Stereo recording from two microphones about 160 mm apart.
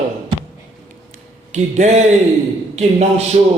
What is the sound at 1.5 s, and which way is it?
A man's voice, 45° right (ahead or behind).